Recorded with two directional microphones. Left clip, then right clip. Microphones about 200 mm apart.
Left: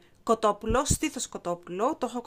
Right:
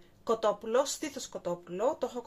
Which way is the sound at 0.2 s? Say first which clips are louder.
Left 4 dB; 55° left (ahead or behind).